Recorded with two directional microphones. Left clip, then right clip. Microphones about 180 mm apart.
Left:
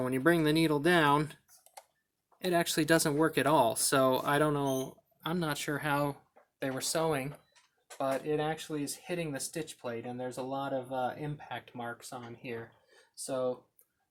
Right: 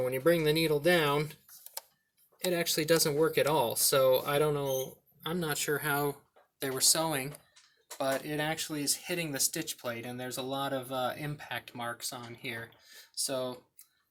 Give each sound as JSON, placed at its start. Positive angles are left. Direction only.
{"t": 0.0, "sound": "speech", "side_deg": 50}
{"t": 2.5, "sound": "speech", "side_deg": 55}
{"t": 7.9, "sound": "speech", "side_deg": 20}